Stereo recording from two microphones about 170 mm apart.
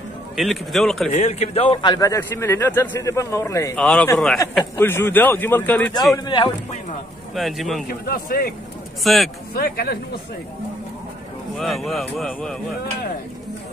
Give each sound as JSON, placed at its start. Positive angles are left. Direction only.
{"t": 0.4, "sound": "speech", "side_deg": 0}
{"t": 1.1, "sound": "a man's voice", "side_deg": 40}
{"t": 3.7, "sound": "a man's voice", "side_deg": 5}
{"t": 6.1, "sound": "speech", "side_deg": 25}
{"t": 7.3, "sound": "speech", "side_deg": 0}
{"t": 7.9, "sound": "a man's voice", "side_deg": 60}
{"t": 9.0, "sound": "speech", "side_deg": 0}
{"t": 9.5, "sound": "a man's voice", "side_deg": 60}
{"t": 11.5, "sound": "speech", "side_deg": 0}